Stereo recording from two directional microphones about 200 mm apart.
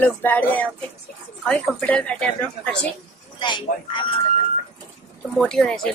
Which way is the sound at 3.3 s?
25° left (ahead or behind).